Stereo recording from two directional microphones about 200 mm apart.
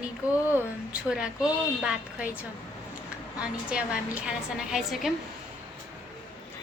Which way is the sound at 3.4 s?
5° right (ahead or behind).